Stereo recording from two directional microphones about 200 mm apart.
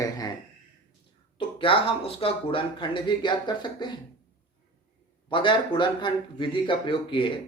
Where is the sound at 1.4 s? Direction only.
25° left (ahead or behind).